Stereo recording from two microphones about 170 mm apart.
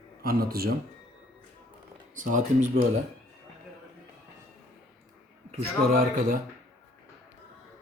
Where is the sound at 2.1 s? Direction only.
50° right (ahead or behind).